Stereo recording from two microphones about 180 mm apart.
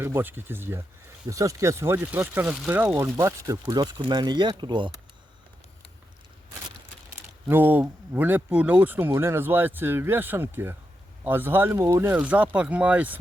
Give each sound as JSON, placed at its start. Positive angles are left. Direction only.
{"t": 0.0, "sound": "speech", "side_deg": -10}
{"t": 7.4, "sound": "speech", "side_deg": -10}